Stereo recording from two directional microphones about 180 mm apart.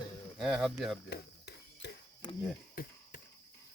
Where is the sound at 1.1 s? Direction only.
65° left (ahead or behind).